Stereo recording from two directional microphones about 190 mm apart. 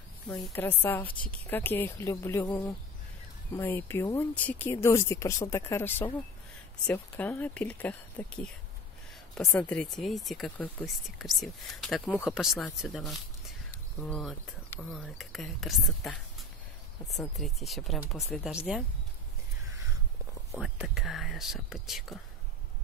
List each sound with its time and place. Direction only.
0.6 s speech: 10° left (ahead or behind)
20.5 s speech: 5° right (ahead or behind)